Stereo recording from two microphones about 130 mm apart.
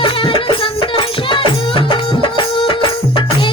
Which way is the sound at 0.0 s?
40° left (ahead or behind).